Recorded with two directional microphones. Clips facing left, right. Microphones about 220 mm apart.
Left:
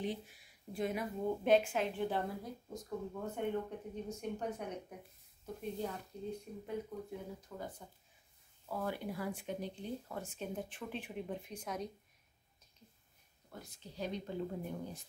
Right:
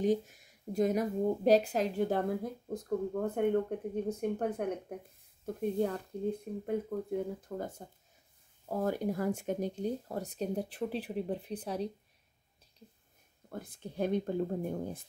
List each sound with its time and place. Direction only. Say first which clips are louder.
0.0 s speech: right 11 dB; 45° right (ahead or behind)
13.5 s speech: right 9 dB; 55° right (ahead or behind)